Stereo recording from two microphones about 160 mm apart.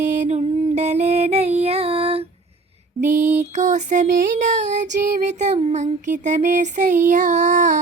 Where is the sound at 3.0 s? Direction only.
50° right (ahead or behind).